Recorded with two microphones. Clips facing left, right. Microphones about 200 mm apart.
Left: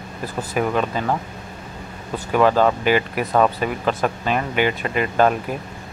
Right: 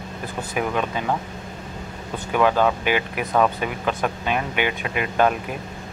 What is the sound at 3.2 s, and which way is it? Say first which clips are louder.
Speech: left 1 dB; centre (ahead or behind).